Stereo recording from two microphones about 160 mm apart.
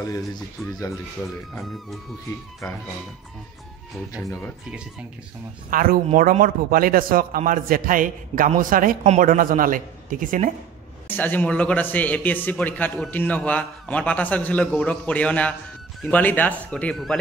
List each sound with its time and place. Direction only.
0.0 s speech: 20° left (ahead or behind)
1.5 s speech: centre (ahead or behind)
5.7 s a man's voice: 60° right (ahead or behind)
11.1 s a man's voice: 10° left (ahead or behind)